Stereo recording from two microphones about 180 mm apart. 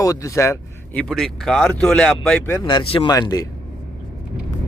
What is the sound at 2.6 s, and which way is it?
Speech, 30° left (ahead or behind).